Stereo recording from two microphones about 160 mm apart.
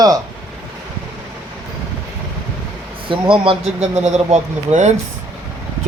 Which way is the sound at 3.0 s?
30° right (ahead or behind).